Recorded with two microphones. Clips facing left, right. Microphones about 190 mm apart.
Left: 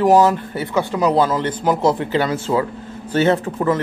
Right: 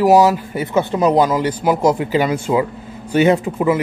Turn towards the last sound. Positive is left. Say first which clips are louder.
# right 2 dB
turn(degrees=-10)  # may be behind; listen again after turning